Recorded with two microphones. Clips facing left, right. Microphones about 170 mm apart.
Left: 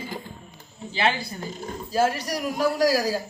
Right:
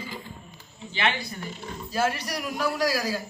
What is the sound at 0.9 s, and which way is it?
A man's voice, 35° left (ahead or behind).